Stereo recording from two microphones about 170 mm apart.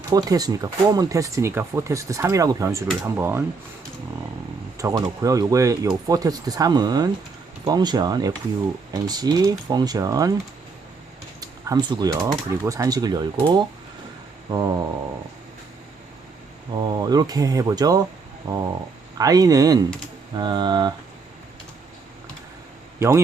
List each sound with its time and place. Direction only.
0.1 s speech: 20° right (ahead or behind)
4.8 s speech: 20° right (ahead or behind)
11.3 s speech: 20° right (ahead or behind)
16.7 s speech: 25° right (ahead or behind)
23.0 s a man's voice: 15° right (ahead or behind)